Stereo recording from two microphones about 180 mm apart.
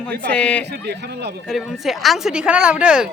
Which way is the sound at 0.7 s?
65° right (ahead or behind).